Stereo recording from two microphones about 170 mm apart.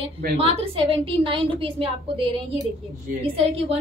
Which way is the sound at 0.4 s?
35° right (ahead or behind).